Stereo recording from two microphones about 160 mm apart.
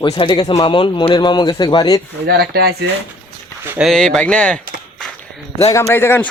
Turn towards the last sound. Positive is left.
turn(degrees=15)  # may be behind; listen again after turning